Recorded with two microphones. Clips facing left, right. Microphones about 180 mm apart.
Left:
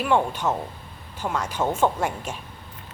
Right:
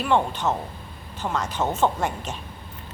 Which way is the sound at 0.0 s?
10° left (ahead or behind).